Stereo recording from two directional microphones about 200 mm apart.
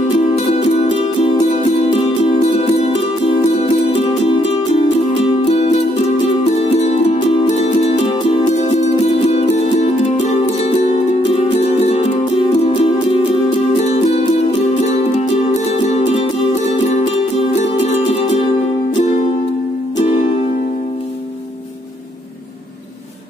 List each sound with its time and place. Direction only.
0.6 s music: 30° left (ahead or behind)
5.4 s music: 30° left (ahead or behind)
17.6 s music: 35° left (ahead or behind)